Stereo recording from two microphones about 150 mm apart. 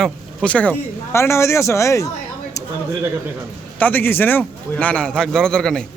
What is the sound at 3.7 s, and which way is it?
Speech, 10° left (ahead or behind).